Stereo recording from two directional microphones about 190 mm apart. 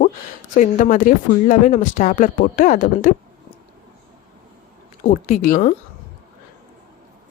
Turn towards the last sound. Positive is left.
turn(degrees=45)  # may be behind; listen again after turning